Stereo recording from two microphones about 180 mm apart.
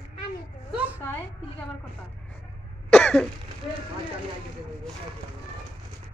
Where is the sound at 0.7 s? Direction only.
10° right (ahead or behind).